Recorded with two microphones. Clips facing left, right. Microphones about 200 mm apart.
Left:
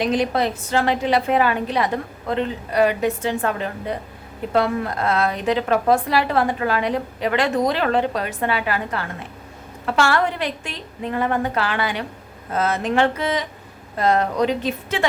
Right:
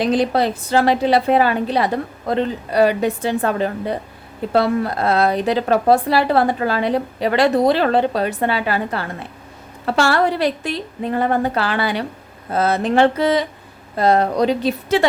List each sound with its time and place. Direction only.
0.0 s speech: 35° right (ahead or behind)